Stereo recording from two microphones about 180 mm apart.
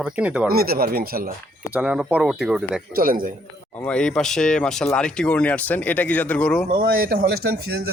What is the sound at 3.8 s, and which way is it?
Speech, 5° left (ahead or behind).